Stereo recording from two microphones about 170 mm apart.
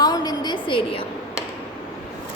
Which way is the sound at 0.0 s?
25° left (ahead or behind).